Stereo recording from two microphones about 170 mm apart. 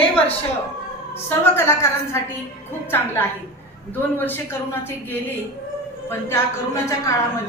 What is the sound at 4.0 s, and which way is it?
Speech, 10° left (ahead or behind).